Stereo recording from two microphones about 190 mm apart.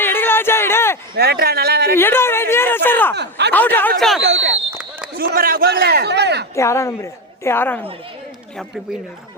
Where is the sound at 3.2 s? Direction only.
65° right (ahead or behind).